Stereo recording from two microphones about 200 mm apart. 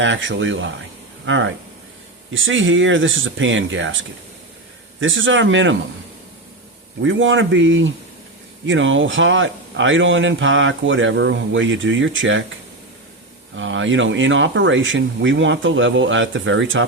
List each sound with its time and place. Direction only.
0.0 s speech: 70° right (ahead or behind)
7.0 s speech: 70° right (ahead or behind)
13.6 s speech: 70° right (ahead or behind)